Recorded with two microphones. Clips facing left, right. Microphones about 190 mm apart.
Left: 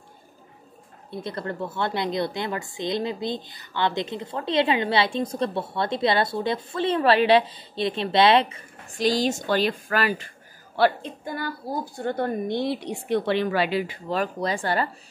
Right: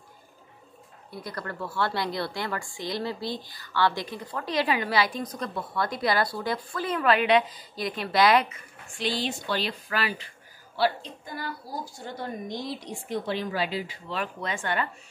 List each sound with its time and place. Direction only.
1.1 s a woman's voice: 25° left (ahead or behind); by 13.9 s 65° left (ahead or behind)
14.0 s speech: 40° left (ahead or behind)